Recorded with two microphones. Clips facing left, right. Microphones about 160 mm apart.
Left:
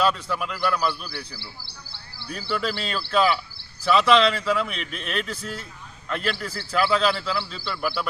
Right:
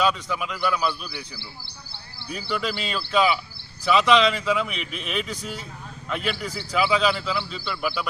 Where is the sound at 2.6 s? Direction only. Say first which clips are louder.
Left 1 dB; 10° right (ahead or behind).